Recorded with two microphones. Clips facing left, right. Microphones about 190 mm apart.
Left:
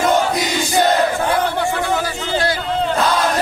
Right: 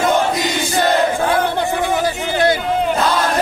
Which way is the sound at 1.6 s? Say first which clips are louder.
Right 2 dB; 20° right (ahead or behind).